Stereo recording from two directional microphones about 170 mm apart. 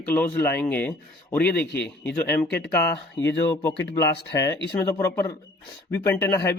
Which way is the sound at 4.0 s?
20° left (ahead or behind).